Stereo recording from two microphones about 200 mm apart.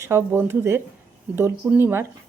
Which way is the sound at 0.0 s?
15° right (ahead or behind).